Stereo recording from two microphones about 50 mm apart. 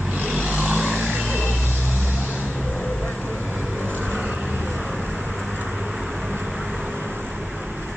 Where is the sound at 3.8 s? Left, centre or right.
Right.